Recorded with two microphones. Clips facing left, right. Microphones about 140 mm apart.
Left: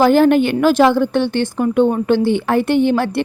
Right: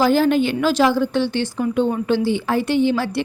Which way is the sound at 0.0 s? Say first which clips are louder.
Left 5 dB; 55° left (ahead or behind).